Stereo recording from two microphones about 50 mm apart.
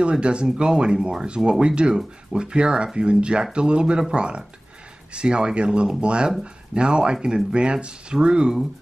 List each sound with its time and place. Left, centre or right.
0.0 s speech: right